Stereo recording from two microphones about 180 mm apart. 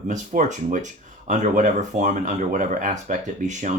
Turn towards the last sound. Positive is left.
turn(degrees=-40)  # may be behind; listen again after turning